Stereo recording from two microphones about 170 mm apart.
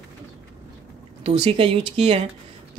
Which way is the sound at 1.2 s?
40° right (ahead or behind).